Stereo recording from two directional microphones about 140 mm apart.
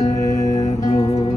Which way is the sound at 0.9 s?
25° left (ahead or behind).